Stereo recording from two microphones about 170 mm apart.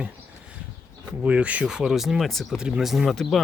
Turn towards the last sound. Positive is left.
turn(degrees=0)  # may be behind; listen again after turning